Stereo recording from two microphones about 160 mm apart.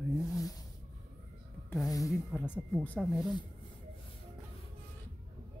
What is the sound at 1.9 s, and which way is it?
Speech, 20° left (ahead or behind).